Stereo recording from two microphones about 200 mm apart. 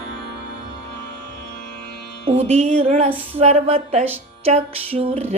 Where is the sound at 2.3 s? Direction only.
30° right (ahead or behind).